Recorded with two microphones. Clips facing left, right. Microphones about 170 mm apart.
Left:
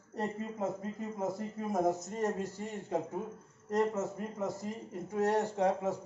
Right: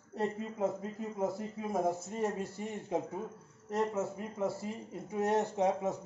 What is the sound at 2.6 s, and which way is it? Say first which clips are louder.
Speech: even; 15° right (ahead or behind).